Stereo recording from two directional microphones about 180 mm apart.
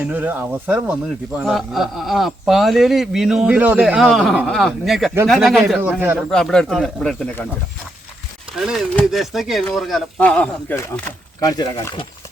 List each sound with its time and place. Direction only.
0.0 s speech: 10° right (ahead or behind); by 7.4 s 5° left (ahead or behind)
8.5 s speech: centre (ahead or behind); by 12.0 s 20° left (ahead or behind)